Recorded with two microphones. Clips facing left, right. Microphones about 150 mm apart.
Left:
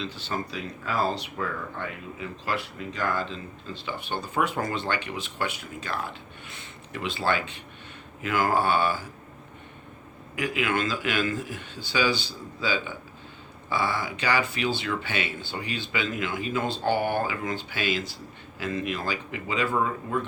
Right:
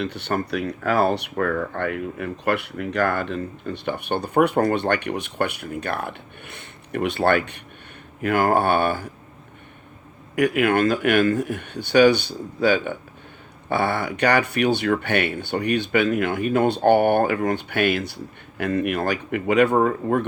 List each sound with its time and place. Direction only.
0.0 s speech: 65° right (ahead or behind)
10.3 s speech: 60° right (ahead or behind)